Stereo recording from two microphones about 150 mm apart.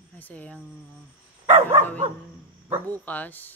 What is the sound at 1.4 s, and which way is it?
Dog, 45° right (ahead or behind).